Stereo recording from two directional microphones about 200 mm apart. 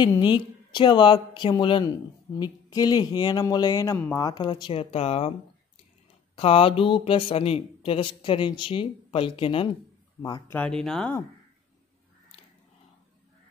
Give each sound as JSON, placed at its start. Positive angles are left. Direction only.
{"t": 0.0, "sound": "speech", "side_deg": 20}
{"t": 6.3, "sound": "speech", "side_deg": 25}
{"t": 10.5, "sound": "speech", "side_deg": 5}